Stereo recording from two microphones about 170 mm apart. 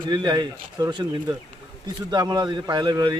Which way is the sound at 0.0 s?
25° right (ahead or behind).